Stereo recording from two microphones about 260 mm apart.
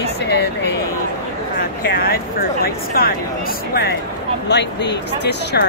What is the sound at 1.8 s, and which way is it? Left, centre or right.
Speech, left.